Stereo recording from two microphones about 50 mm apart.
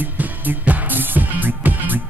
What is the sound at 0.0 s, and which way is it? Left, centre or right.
Music, right.